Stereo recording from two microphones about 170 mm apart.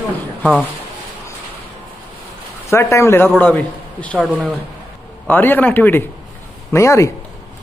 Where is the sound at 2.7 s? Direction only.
15° left (ahead or behind).